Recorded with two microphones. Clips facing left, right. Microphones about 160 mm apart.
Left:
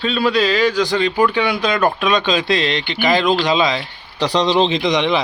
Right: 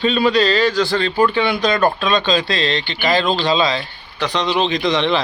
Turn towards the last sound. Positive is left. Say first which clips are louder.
# left 1 dB
turn(degrees=15)  # may be behind; listen again after turning